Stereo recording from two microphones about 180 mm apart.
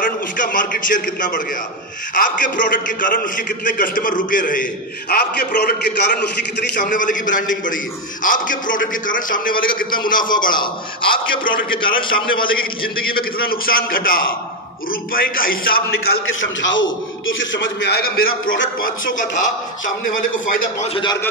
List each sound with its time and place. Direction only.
0.0 s a man's voice: 50° left (ahead or behind)
6.7 s a man's voice: 45° left (ahead or behind)
11.7 s a man's voice: 25° left (ahead or behind)
12.4 s a man's voice: 55° left (ahead or behind)
16.3 s a man's voice: 90° left; by 19.4 s 50° left (ahead or behind)
20.4 s a man's voice: 45° left (ahead or behind)
20.9 s a man's voice: 25° left (ahead or behind)